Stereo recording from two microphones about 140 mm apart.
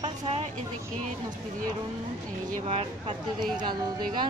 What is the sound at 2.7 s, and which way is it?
Speech, 45° right (ahead or behind).